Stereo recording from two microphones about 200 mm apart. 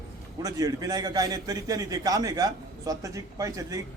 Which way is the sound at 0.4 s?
20° right (ahead or behind).